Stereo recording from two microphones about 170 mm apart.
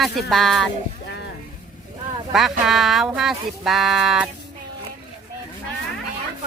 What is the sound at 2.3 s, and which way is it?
Speech, centre (ahead or behind).